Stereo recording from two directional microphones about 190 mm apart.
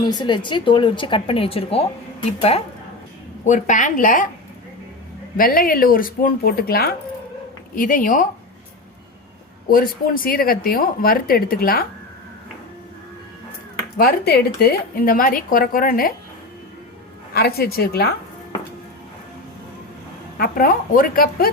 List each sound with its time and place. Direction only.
0.0 s speech: 25° left (ahead or behind); by 4.3 s 45° left (ahead or behind)
5.4 s speech: 50° left (ahead or behind)
9.6 s speech: 50° left (ahead or behind)
13.9 s speech: 55° left (ahead or behind)
17.3 s a woman's voice: 55° left (ahead or behind)
20.4 s speech: 50° left (ahead or behind)